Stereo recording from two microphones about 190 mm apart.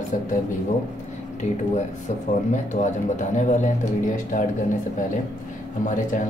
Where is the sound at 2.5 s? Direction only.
40° left (ahead or behind).